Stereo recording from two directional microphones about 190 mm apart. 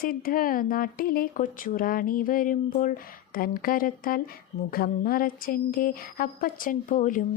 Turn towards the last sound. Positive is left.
turn(degrees=45)  # may be behind; listen again after turning